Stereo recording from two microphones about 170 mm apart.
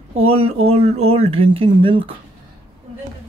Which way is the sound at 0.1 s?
35° right (ahead or behind).